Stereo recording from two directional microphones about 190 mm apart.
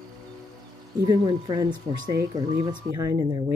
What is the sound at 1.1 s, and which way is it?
Speech, 20° right (ahead or behind).